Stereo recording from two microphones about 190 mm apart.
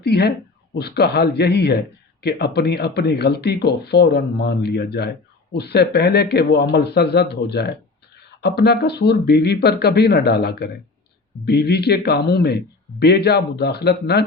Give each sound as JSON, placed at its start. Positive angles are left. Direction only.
{"t": 0.0, "sound": "speech", "side_deg": 55}